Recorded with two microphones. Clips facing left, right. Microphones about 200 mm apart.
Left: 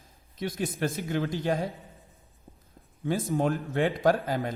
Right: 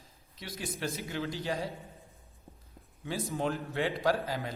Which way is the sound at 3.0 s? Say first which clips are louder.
Left 6 dB; 50° left (ahead or behind).